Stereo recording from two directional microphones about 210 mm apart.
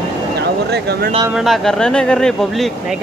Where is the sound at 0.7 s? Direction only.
50° right (ahead or behind).